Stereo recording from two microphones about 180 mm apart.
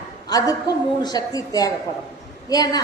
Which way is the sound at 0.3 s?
20° left (ahead or behind).